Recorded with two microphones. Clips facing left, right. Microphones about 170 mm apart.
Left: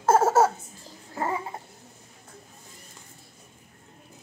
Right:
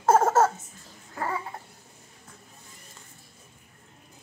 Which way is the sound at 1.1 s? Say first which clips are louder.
Left 2 dB; 25° left (ahead or behind).